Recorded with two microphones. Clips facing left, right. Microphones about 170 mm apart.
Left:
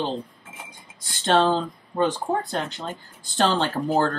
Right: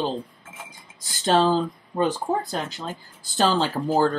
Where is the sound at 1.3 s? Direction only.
5° right (ahead or behind).